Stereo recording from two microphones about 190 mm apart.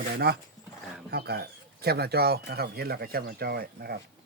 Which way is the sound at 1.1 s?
60° right (ahead or behind).